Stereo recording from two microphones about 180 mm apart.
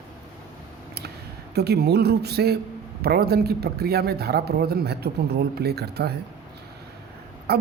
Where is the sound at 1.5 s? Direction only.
65° right (ahead or behind).